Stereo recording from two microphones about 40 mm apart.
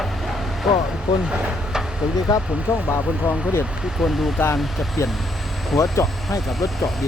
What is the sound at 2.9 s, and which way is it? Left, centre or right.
Speech, left.